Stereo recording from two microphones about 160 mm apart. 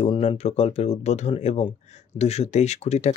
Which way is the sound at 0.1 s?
35° left (ahead or behind).